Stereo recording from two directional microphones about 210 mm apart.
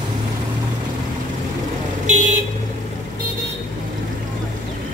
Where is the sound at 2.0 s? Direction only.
35° right (ahead or behind).